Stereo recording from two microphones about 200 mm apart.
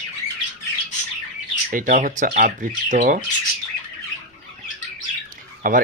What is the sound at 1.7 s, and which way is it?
Speech, 40° right (ahead or behind).